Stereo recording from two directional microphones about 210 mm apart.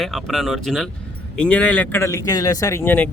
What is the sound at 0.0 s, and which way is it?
Speech, centre (ahead or behind).